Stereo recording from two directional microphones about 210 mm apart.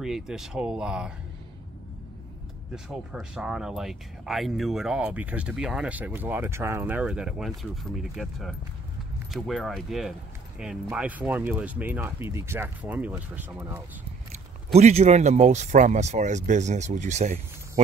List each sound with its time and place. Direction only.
0.0 s speech: centre (ahead or behind)
2.7 s speech: 5° right (ahead or behind)
14.8 s speech: 30° right (ahead or behind)